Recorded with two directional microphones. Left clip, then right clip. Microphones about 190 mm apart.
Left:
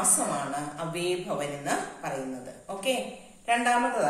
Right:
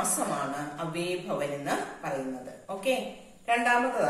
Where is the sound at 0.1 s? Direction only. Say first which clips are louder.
Left 1 dB; 15° left (ahead or behind).